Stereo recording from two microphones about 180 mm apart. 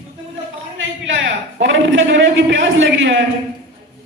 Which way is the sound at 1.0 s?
90° right.